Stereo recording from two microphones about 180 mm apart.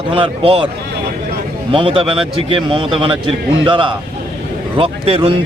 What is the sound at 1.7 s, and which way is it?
A man's voice, 30° right (ahead or behind).